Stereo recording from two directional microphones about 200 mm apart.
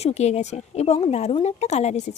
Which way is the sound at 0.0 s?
35° left (ahead or behind).